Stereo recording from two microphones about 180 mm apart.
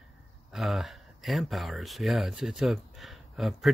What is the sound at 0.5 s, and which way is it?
Speech, centre (ahead or behind).